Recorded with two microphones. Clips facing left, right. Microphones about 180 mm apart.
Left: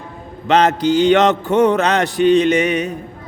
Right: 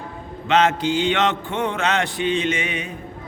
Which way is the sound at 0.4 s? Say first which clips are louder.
Left 4 dB; 40° left (ahead or behind).